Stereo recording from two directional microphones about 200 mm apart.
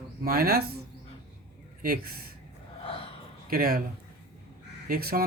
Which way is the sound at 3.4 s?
45° right (ahead or behind).